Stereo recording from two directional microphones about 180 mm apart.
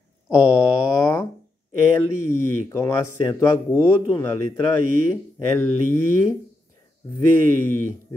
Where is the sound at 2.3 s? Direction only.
15° left (ahead or behind).